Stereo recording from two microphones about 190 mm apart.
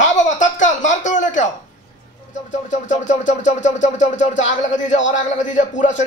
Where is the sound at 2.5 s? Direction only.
40° left (ahead or behind).